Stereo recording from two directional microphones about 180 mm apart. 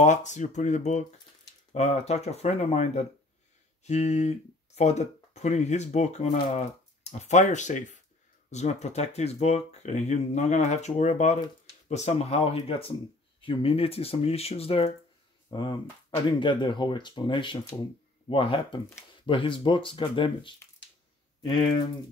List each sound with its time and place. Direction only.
0.0 s speech: 40° left (ahead or behind)